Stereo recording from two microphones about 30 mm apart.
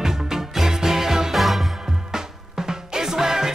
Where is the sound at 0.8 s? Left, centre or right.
Centre.